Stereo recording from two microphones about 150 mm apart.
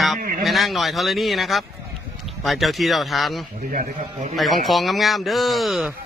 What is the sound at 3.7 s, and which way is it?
Speech, 60° right (ahead or behind).